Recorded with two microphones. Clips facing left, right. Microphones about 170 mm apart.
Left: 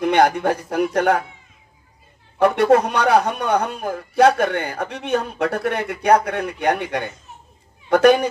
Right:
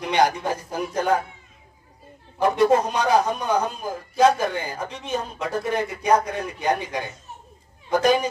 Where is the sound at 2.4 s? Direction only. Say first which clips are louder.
Left 3 dB; 65° left (ahead or behind).